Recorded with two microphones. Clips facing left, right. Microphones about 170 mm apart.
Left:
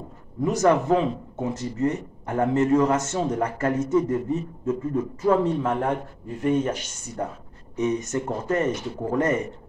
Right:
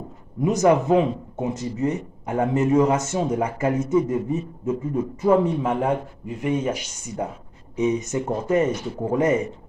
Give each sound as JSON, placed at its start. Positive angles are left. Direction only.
{"t": 0.4, "sound": "speech", "side_deg": -15}